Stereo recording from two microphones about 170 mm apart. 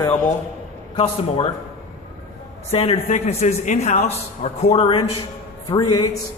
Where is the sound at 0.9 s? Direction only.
35° left (ahead or behind).